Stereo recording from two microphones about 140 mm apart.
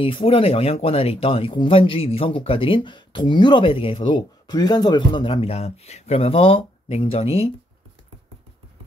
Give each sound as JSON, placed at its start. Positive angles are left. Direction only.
{"t": 0.0, "sound": "speech", "side_deg": 40}